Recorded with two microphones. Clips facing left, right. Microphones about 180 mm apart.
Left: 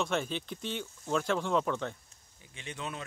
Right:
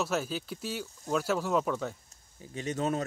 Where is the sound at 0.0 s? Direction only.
5° right (ahead or behind).